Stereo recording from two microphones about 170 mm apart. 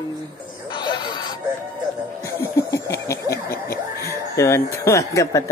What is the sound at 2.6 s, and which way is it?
Snicker, 20° left (ahead or behind).